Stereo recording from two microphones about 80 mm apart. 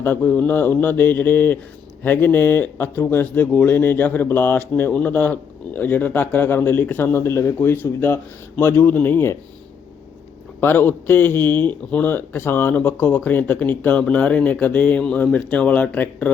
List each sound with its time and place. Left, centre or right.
0.0 s speech: left
10.6 s speech: left